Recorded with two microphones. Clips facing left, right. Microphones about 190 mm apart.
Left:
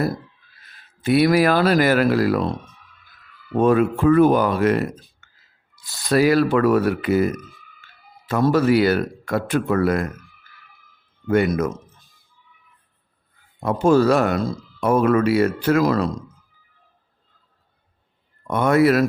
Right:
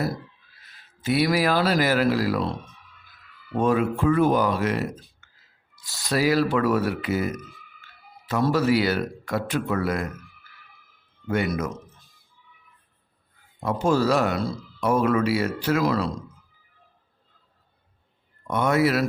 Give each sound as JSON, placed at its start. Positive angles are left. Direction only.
{"t": 1.0, "sound": "speech", "side_deg": 55}
{"t": 3.6, "sound": "speech", "side_deg": 55}
{"t": 11.3, "sound": "speech", "side_deg": 50}
{"t": 13.6, "sound": "speech", "side_deg": 55}
{"t": 18.4, "sound": "speech", "side_deg": 55}